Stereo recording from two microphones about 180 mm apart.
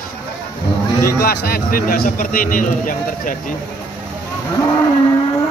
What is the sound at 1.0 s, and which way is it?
A man's voice, 55° left (ahead or behind).